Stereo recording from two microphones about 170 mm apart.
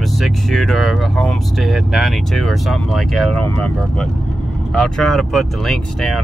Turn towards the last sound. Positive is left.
turn(degrees=0)  # may be behind; listen again after turning